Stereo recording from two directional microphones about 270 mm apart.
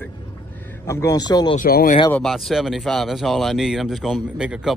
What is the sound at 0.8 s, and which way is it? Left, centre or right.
Speech, centre.